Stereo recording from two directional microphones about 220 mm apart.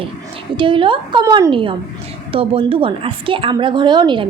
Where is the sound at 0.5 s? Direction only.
25° right (ahead or behind).